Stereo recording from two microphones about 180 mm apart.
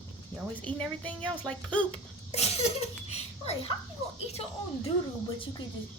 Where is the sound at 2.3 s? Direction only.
35° left (ahead or behind).